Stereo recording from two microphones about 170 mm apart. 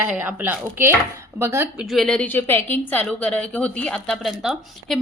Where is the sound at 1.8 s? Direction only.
Centre (ahead or behind).